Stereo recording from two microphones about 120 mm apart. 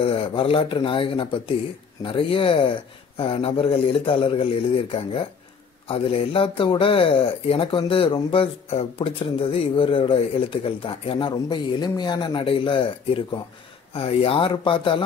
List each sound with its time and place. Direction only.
0.0 s speech: 50° left (ahead or behind)